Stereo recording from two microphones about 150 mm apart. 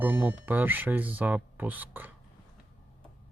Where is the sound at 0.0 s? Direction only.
10° right (ahead or behind).